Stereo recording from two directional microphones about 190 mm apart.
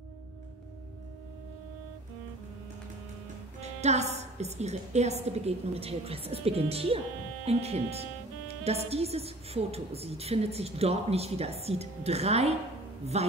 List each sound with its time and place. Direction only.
3.6 s a woman's voice: 35° right (ahead or behind)